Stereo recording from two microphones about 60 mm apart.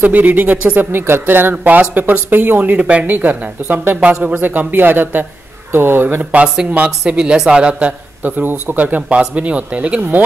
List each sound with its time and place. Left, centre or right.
0.0 s speech: right
6.4 s speech: centre